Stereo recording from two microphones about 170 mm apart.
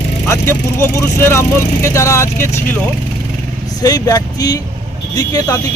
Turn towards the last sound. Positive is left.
turn(degrees=20)  # may be behind; listen again after turning